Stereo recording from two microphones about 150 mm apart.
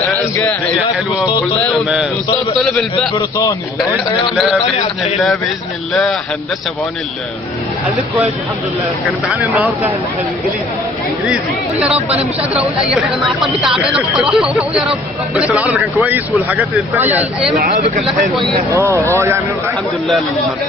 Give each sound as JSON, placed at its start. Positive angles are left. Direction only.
{"t": 0.1, "sound": "a sound", "side_deg": 10}
{"t": 2.6, "sound": "speech", "side_deg": 5}
{"t": 3.2, "sound": "a man's voice", "side_deg": 25}
{"t": 9.0, "sound": "speech", "side_deg": -10}
{"t": 11.8, "sound": "speech", "side_deg": -10}
{"t": 17.6, "sound": "speech", "side_deg": -70}
{"t": 18.7, "sound": "speech", "side_deg": -20}